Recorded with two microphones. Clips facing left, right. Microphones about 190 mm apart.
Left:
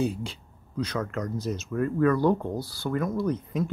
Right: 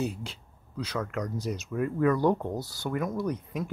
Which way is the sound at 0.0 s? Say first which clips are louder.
Left 4 dB; 5° right (ahead or behind).